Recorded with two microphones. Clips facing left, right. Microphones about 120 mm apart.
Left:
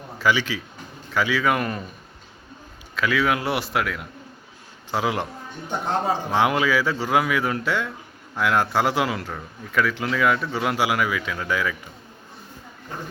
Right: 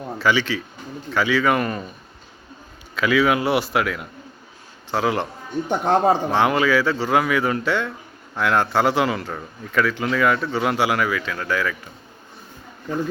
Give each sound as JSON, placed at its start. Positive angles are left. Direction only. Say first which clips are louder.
{"t": 0.2, "sound": "a man's voice", "louder": "right 1 dB", "side_deg": 5}
{"t": 2.9, "sound": "a man's voice", "louder": "right 4 dB", "side_deg": 0}
{"t": 5.6, "sound": "speech", "louder": "right 6 dB", "side_deg": -50}
{"t": 6.3, "sound": "a man's voice", "louder": "right 2 dB", "side_deg": 5}